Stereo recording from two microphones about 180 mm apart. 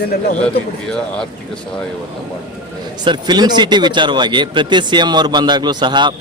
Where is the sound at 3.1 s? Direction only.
25° right (ahead or behind).